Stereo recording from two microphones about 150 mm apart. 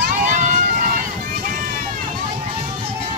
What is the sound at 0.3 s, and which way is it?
Run, 55° right (ahead or behind).